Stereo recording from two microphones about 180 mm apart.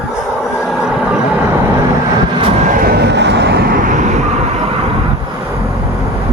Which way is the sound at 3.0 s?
70° right (ahead or behind).